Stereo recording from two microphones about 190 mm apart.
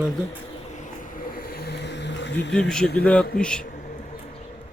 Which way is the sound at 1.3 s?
55° left (ahead or behind).